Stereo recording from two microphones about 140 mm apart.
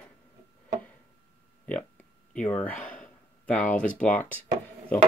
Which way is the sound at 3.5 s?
65° left (ahead or behind).